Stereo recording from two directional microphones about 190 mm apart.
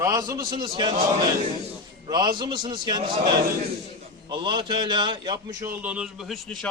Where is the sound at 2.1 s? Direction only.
20° right (ahead or behind).